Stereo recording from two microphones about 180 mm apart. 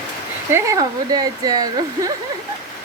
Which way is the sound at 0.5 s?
20° right (ahead or behind).